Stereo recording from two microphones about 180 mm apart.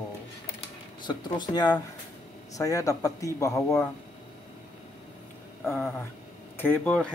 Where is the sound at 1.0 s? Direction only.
25° left (ahead or behind).